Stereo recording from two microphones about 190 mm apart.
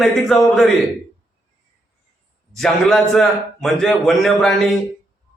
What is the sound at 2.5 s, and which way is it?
A man's voice, centre (ahead or behind).